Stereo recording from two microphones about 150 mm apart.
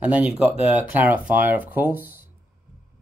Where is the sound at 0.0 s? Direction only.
10° right (ahead or behind).